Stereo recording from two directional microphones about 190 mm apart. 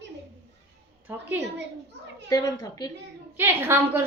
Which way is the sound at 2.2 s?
20° left (ahead or behind).